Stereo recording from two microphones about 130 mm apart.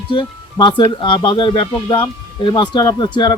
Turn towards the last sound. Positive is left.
turn(degrees=35)  # may be behind; listen again after turning